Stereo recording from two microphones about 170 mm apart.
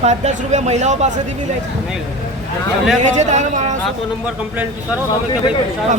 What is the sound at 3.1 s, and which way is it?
Speech, 45° right (ahead or behind).